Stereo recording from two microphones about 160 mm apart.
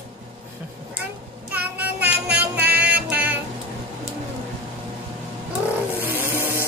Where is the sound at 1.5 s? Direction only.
10° right (ahead or behind).